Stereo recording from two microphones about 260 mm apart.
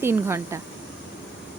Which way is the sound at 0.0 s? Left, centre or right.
Centre.